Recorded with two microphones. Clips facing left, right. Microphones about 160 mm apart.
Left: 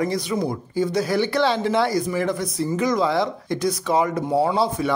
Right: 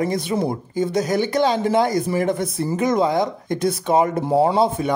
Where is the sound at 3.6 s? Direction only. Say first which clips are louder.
Right 3 dB; 25° right (ahead or behind).